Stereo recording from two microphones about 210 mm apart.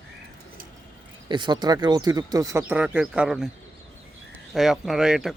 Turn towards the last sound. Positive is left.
turn(degrees=-5)  # may be behind; listen again after turning